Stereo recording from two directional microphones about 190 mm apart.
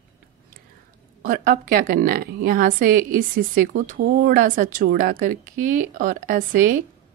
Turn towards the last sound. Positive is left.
turn(degrees=-45)  # may be behind; listen again after turning